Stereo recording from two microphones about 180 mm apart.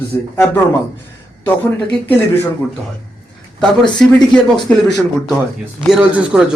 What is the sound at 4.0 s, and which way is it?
A man's voice, 5° left (ahead or behind).